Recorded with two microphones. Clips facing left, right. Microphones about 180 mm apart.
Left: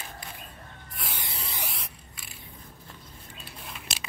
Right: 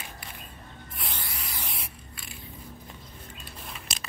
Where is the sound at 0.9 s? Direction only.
Centre (ahead or behind).